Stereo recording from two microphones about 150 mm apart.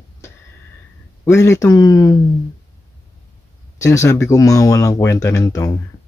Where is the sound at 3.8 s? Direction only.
20° left (ahead or behind).